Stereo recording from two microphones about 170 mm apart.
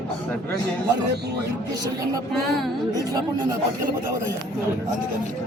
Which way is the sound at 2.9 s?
25° right (ahead or behind).